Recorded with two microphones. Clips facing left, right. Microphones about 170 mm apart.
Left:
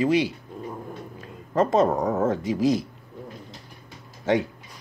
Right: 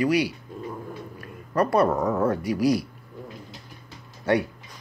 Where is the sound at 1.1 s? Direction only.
20° left (ahead or behind).